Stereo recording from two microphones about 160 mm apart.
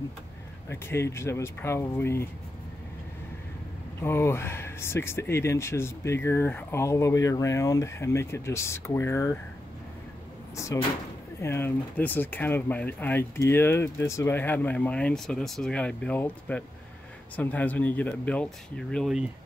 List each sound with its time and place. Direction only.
0.7 s speech: 15° left (ahead or behind)
4.0 s speech: 15° left (ahead or behind)
10.5 s door: 20° left (ahead or behind)
11.4 s speech: 15° left (ahead or behind)